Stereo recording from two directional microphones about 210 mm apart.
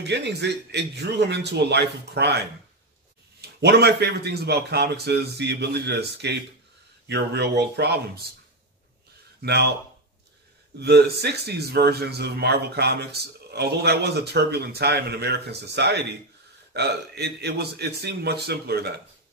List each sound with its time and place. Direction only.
0.0 s speech: 55° right (ahead or behind)
3.3 s speech: 50° right (ahead or behind)
9.4 s speech: 50° right (ahead or behind)
10.8 s speech: 50° right (ahead or behind)